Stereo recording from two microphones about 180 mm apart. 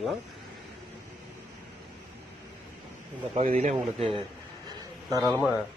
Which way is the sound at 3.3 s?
35° right (ahead or behind).